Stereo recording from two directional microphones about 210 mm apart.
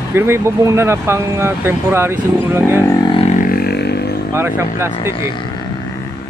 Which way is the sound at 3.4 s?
45° left (ahead or behind).